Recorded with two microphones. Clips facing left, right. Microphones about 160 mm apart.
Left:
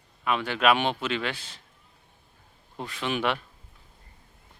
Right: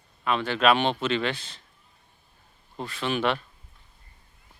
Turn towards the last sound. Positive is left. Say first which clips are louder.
# right 2 dB
turn(degrees=15)  # may be behind; listen again after turning